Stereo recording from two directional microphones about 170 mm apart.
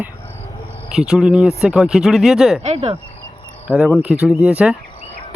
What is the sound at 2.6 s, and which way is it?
Speech, 40° right (ahead or behind).